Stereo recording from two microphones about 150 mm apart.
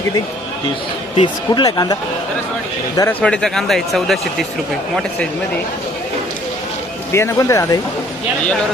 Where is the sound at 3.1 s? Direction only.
5° left (ahead or behind).